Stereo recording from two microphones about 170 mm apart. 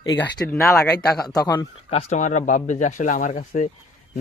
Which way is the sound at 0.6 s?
Centre (ahead or behind).